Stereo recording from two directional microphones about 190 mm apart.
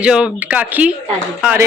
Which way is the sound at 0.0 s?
5° right (ahead or behind).